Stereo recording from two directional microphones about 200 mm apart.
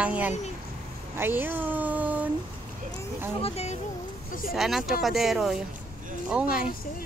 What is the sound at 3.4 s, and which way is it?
Speech, 30° left (ahead or behind).